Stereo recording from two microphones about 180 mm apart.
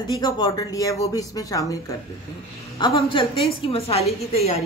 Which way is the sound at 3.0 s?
30° left (ahead or behind).